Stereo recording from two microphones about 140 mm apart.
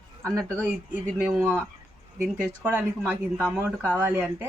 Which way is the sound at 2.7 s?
15° right (ahead or behind).